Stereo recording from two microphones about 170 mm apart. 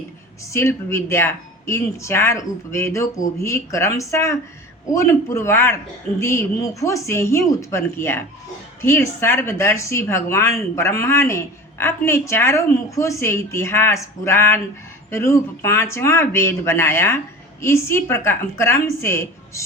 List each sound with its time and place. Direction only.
0.5 s speech: 15° left (ahead or behind)